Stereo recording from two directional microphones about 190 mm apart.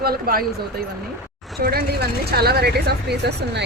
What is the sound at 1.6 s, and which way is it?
A woman's voice, 55° right (ahead or behind).